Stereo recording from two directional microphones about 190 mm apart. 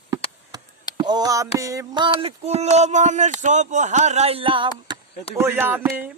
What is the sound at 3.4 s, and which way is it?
Speech, 40° right (ahead or behind).